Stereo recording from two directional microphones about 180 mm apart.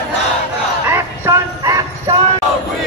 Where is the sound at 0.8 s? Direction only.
15° right (ahead or behind).